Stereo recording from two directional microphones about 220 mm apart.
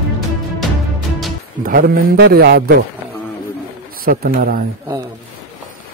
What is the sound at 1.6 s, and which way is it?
A man's voice, 40° right (ahead or behind).